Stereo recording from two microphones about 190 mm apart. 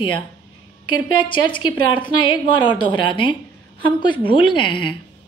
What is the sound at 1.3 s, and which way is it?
A woman's voice, 25° left (ahead or behind).